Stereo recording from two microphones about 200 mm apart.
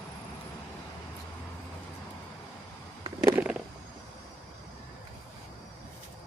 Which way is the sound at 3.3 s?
5° right (ahead or behind).